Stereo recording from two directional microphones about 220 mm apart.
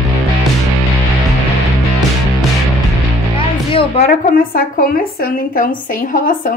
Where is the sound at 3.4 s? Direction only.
25° left (ahead or behind).